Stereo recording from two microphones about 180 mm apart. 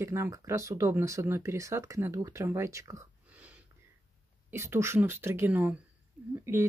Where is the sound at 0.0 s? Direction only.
15° right (ahead or behind).